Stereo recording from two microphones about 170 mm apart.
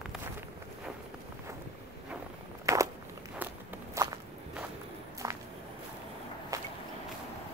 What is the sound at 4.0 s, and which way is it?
Walk, 15° right (ahead or behind).